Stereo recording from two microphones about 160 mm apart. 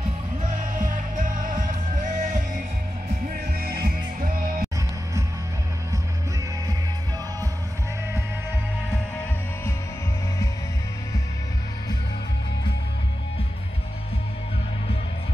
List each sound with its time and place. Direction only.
0.6 s music: 55° right (ahead or behind)
3.3 s music: 75° right (ahead or behind)